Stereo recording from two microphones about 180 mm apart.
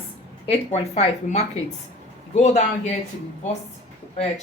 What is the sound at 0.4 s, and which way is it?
Speech, 35° left (ahead or behind).